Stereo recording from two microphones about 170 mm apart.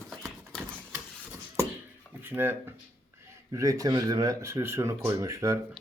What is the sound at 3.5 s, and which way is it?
Speech, 20° right (ahead or behind).